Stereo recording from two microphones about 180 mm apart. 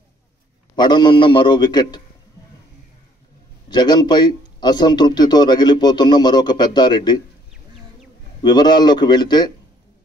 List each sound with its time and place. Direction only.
0.7 s speech: 25° left (ahead or behind)
3.7 s speech: 25° left (ahead or behind)
8.4 s speech: 25° left (ahead or behind)